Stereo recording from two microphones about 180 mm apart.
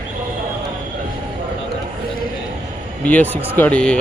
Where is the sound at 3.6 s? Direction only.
5° left (ahead or behind).